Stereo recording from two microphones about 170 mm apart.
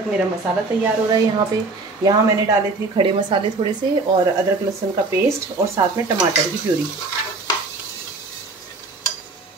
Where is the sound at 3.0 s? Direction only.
30° right (ahead or behind).